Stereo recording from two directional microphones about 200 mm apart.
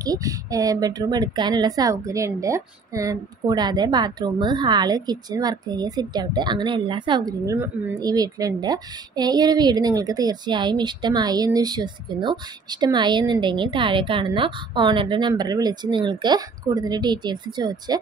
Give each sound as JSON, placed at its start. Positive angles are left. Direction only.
{"t": 0.0, "sound": "a woman's voice", "side_deg": -20}